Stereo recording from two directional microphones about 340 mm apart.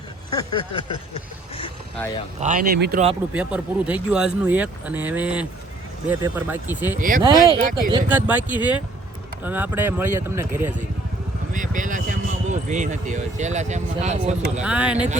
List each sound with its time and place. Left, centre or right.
0.3 s a sound: centre
2.4 s speech: right
3.3 s speech: centre
11.5 s speech: right
14.6 s speech: centre